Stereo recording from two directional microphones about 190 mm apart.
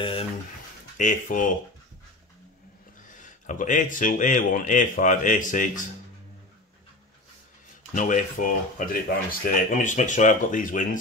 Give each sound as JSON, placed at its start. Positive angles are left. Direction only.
{"t": 0.0, "sound": "speech", "side_deg": 30}
{"t": 0.9, "sound": "speech", "side_deg": 45}
{"t": 3.2, "sound": "speech", "side_deg": 40}
{"t": 7.9, "sound": "speech", "side_deg": 40}